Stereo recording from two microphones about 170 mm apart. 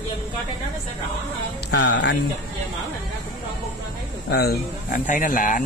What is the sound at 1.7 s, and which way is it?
Speech, 90° left.